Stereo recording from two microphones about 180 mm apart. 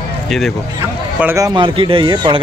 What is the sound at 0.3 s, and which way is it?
Speech, centre (ahead or behind).